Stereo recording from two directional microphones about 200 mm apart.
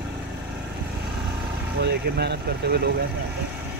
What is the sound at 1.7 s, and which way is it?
Speech, 55° right (ahead or behind).